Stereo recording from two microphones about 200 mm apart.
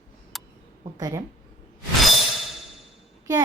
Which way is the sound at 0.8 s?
20° right (ahead or behind).